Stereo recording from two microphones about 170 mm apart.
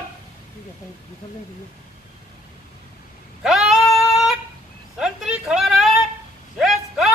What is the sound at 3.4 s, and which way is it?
Female singing, 5° right (ahead or behind).